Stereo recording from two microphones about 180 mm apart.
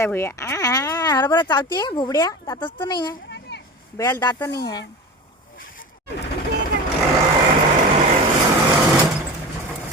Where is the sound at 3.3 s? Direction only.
70° left (ahead or behind).